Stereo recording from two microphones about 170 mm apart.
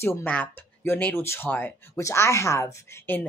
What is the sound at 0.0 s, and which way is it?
Speech, 10° left (ahead or behind).